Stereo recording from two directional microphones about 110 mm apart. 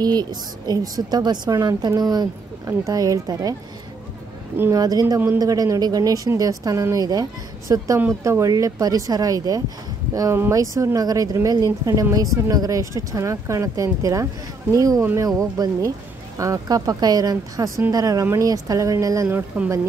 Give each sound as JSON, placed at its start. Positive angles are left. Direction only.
{"t": 0.0, "sound": "a woman's voice", "side_deg": -40}
{"t": 4.7, "sound": "a woman's voice", "side_deg": -35}
{"t": 19.2, "sound": "a woman's voice", "side_deg": -10}